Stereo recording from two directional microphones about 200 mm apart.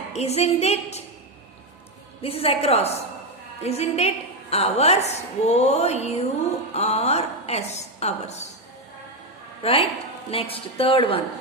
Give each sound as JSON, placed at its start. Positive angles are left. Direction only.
{"t": 0.1, "sound": "a woman's voice", "side_deg": 30}
{"t": 2.2, "sound": "a woman's voice", "side_deg": 30}
{"t": 9.6, "sound": "a woman's voice", "side_deg": 30}